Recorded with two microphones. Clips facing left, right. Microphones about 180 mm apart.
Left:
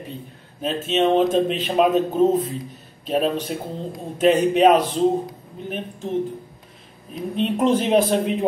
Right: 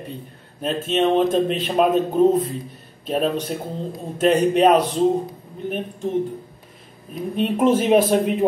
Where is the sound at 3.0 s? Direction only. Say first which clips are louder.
Even; centre (ahead or behind).